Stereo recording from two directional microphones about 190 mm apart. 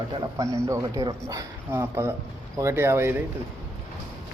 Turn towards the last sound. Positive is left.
turn(degrees=-10)  # may be behind; listen again after turning